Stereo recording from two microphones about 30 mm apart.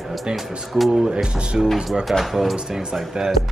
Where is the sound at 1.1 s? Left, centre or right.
Right.